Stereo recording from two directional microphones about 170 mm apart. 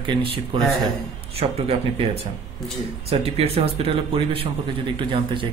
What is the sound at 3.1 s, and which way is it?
Speech, 35° right (ahead or behind).